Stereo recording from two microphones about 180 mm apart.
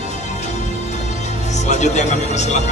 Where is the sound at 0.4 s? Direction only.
40° left (ahead or behind).